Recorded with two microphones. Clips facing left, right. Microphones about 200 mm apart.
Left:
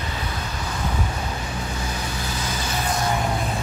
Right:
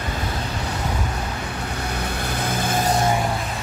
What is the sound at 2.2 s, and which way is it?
Vehicle, 60° right (ahead or behind).